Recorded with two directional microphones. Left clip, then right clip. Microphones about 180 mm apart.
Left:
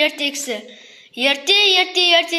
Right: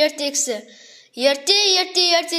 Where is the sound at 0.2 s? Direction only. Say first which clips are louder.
Even; 50° right (ahead or behind).